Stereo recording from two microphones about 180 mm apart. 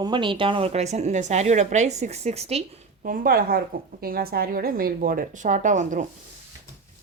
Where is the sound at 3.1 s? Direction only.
55° right (ahead or behind).